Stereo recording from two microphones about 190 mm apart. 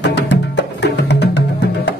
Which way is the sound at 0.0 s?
65° left (ahead or behind).